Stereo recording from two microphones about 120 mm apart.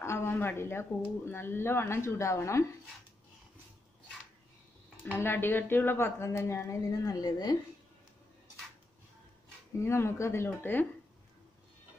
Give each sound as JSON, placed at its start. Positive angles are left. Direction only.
{"t": 0.0, "sound": "speech", "side_deg": 20}
{"t": 5.0, "sound": "speech", "side_deg": 15}
{"t": 9.8, "sound": "speech", "side_deg": 20}